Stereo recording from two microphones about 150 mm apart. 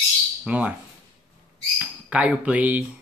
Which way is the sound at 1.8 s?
10° right (ahead or behind).